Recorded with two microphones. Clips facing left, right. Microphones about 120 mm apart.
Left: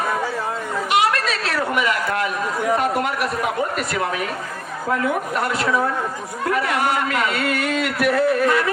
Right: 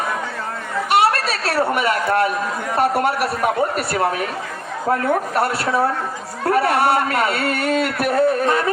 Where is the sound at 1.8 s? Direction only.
35° right (ahead or behind).